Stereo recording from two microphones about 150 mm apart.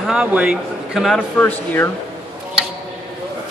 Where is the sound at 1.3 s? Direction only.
15° left (ahead or behind).